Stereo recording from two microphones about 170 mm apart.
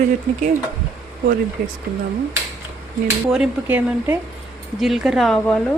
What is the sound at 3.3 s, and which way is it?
Speech, 5° right (ahead or behind).